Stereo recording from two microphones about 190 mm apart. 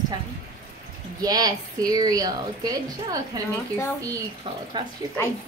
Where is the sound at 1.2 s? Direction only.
20° right (ahead or behind).